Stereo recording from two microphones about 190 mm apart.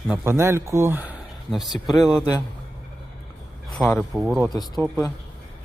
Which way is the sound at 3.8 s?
15° left (ahead or behind).